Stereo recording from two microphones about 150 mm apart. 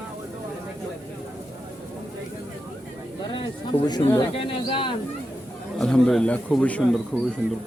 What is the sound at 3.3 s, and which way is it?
Speech, 30° left (ahead or behind).